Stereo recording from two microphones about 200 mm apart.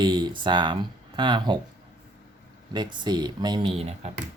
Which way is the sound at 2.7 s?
20° right (ahead or behind).